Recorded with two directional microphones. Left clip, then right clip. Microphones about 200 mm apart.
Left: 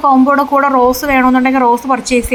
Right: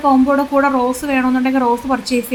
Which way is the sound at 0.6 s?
20° left (ahead or behind).